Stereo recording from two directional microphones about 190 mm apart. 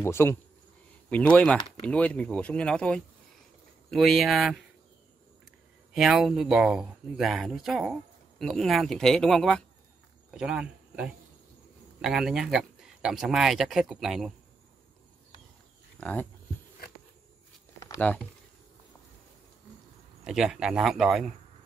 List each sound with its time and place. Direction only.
0.0 s speech: 15° left (ahead or behind)
5.9 s speech: centre (ahead or behind)
16.0 s speech: 10° left (ahead or behind)
17.7 s a sound: 15° left (ahead or behind)
20.2 s speech: 5° right (ahead or behind)